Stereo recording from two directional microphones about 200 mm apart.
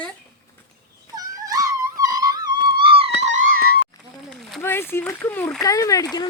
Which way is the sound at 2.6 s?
25° right (ahead or behind).